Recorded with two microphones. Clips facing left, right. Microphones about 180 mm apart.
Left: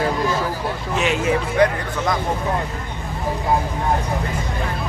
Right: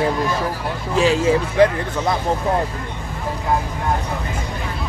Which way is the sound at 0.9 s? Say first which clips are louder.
Right 4 dB; 30° right (ahead or behind).